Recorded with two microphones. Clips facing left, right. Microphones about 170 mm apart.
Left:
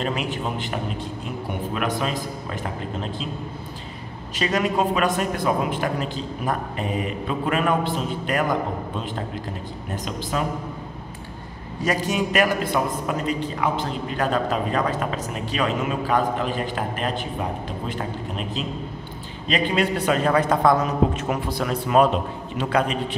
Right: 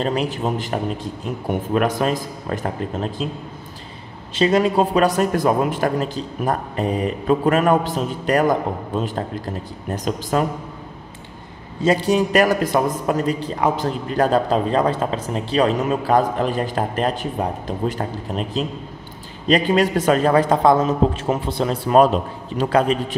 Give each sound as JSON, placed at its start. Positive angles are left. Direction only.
{"t": 0.0, "sound": "a man's voice", "side_deg": -35}
{"t": 4.4, "sound": "a man's voice", "side_deg": -30}
{"t": 10.4, "sound": "speech", "side_deg": -45}
{"t": 11.8, "sound": "a man's voice", "side_deg": -30}